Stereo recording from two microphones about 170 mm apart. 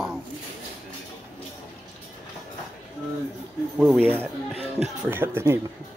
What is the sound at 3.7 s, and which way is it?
Speech, centre (ahead or behind).